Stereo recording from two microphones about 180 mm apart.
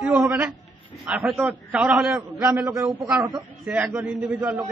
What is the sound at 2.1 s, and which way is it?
A man's voice, 20° right (ahead or behind).